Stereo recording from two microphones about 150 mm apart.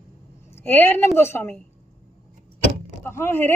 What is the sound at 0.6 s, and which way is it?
A woman's voice, 15° left (ahead or behind).